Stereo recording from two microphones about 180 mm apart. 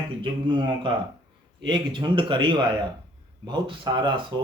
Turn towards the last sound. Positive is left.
turn(degrees=-25)  # may be behind; listen again after turning